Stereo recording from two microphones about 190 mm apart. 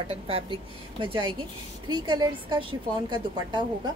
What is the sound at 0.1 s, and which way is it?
A woman's voice, 30° right (ahead or behind).